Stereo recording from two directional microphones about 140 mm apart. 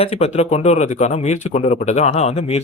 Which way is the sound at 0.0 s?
45° left (ahead or behind).